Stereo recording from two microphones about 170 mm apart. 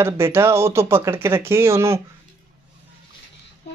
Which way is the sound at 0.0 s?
15° right (ahead or behind).